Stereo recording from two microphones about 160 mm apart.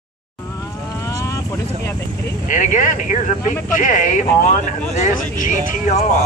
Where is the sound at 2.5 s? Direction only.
55° left (ahead or behind).